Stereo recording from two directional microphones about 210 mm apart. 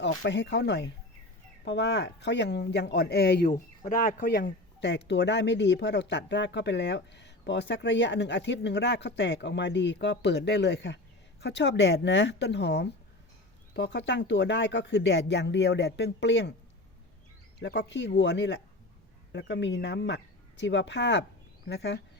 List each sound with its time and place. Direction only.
0.0 s speech: 55° left (ahead or behind)
17.6 s speech: 60° left (ahead or behind)